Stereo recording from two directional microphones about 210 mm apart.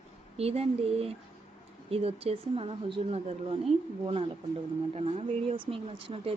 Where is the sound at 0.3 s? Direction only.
30° right (ahead or behind).